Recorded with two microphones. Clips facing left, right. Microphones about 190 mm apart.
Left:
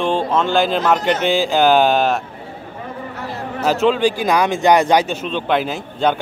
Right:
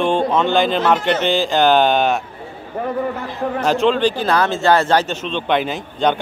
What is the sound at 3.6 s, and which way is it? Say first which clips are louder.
Speech: left 1 dB; 5° left (ahead or behind).